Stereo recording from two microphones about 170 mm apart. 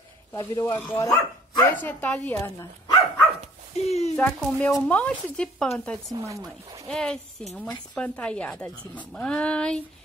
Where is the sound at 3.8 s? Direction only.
40° left (ahead or behind).